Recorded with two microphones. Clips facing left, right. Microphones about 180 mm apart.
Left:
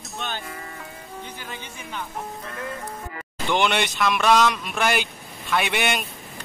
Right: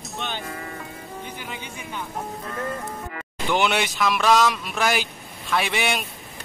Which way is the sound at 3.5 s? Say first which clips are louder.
Even; 5° right (ahead or behind).